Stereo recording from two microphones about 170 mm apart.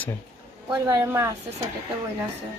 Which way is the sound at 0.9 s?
15° right (ahead or behind).